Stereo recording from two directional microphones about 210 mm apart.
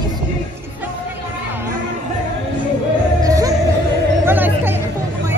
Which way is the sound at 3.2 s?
15° right (ahead or behind).